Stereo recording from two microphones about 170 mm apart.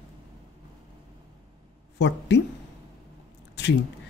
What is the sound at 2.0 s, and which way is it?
Speech, 90° left.